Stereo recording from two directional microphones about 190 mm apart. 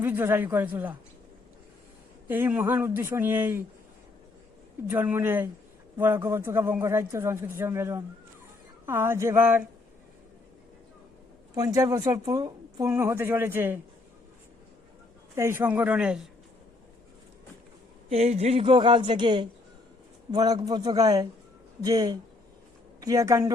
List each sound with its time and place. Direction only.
0.0 s a man's voice: 10° right (ahead or behind)
2.2 s a man's voice: 10° right (ahead or behind)
4.9 s a man's voice: 10° right (ahead or behind)
11.5 s a man's voice: 20° right (ahead or behind)
15.4 s a man's voice: 15° right (ahead or behind)
18.1 s a man's voice: 35° right (ahead or behind); by 23.6 s 15° right (ahead or behind)